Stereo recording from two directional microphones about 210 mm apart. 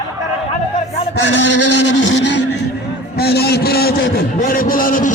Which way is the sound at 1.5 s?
90° left.